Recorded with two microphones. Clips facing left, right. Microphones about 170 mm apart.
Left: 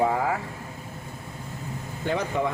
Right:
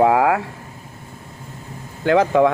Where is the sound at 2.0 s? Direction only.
90° right.